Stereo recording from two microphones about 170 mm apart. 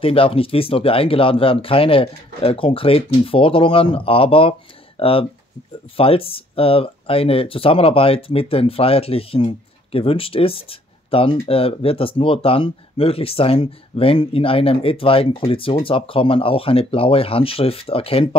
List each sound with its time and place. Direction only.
0.0 s speech: 35° left (ahead or behind)